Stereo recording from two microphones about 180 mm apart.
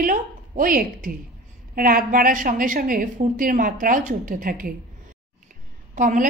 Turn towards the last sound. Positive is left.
turn(degrees=-45)  # may be behind; listen again after turning